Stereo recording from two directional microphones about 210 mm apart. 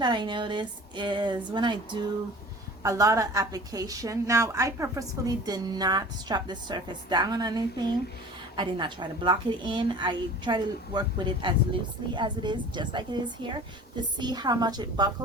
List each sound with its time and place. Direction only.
0.0 s a woman's voice: 20° right (ahead or behind)